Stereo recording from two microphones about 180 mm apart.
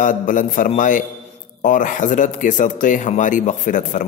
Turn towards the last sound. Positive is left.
turn(degrees=45)  # may be behind; listen again after turning